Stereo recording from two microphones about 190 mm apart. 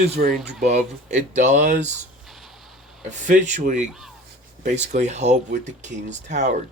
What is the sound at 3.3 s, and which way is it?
Speech, 40° right (ahead or behind).